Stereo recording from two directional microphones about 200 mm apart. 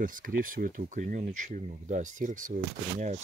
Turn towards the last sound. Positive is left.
turn(degrees=-35)  # may be behind; listen again after turning